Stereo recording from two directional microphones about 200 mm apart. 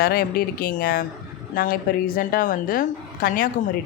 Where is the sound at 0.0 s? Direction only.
50° left (ahead or behind).